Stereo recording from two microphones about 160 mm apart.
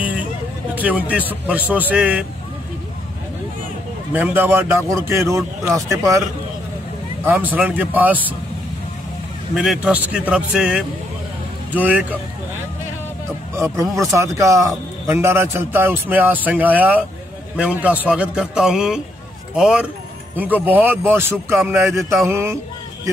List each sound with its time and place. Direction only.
0.7 s a man's voice: 10° right (ahead or behind)
4.1 s a man's voice: 15° right (ahead or behind)
7.2 s a man's voice: 10° right (ahead or behind)
9.6 s a man's voice: 5° right (ahead or behind)
14.1 s a man's voice: 20° right (ahead or behind)